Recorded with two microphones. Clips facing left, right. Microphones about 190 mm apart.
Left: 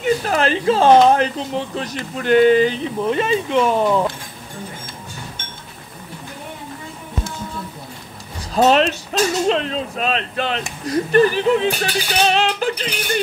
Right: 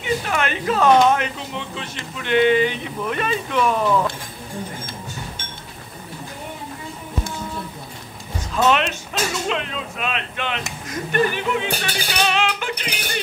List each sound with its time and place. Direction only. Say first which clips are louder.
0.0 s speech: left 5 dB; 40° left (ahead or behind)
8.5 s speech: left 5 dB; 35° left (ahead or behind)